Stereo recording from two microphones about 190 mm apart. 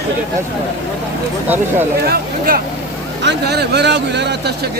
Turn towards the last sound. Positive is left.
turn(degrees=-60)  # may be behind; listen again after turning